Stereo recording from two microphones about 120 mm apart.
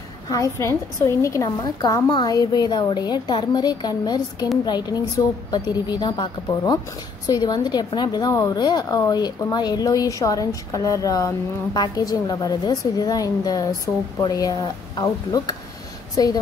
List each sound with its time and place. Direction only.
0.3 s a woman's voice: 25° left (ahead or behind)